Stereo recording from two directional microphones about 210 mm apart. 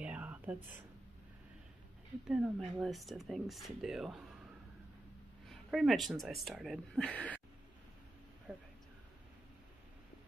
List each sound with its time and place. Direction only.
0.0 s whispering: 5° right (ahead or behind)
2.2 s speech: centre (ahead or behind)
5.5 s speech: centre (ahead or behind)
8.5 s a sound: 5° right (ahead or behind)